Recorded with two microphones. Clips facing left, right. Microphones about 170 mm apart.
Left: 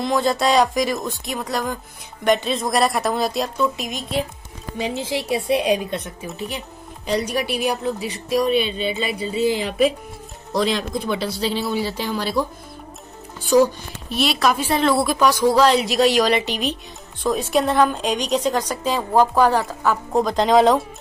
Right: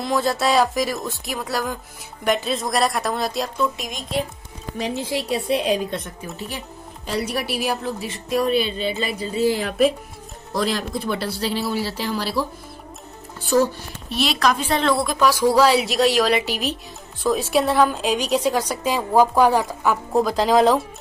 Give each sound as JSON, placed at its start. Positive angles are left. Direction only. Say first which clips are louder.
{"t": 0.0, "sound": "a woman's voice", "louder": "left 2 dB", "side_deg": 0}
{"t": 5.3, "sound": "a woman's voice", "louder": "left 2 dB", "side_deg": 55}
{"t": 5.9, "sound": "a woman's voice", "louder": "left 2 dB", "side_deg": 0}
{"t": 8.7, "sound": "speech", "louder": "left 1 dB", "side_deg": -40}
{"t": 9.4, "sound": "a woman's voice", "louder": "even", "side_deg": 0}
{"t": 13.5, "sound": "a woman's voice", "louder": "left 3 dB", "side_deg": -5}